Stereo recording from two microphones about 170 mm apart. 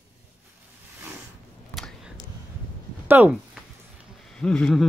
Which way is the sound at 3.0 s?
10° right (ahead or behind).